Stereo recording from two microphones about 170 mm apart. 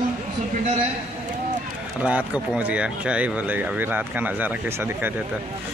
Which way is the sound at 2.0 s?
10° right (ahead or behind).